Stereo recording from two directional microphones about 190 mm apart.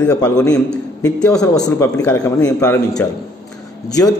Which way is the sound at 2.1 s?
15° left (ahead or behind).